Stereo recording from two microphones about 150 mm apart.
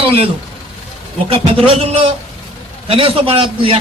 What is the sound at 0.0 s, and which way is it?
A man's voice, 40° right (ahead or behind).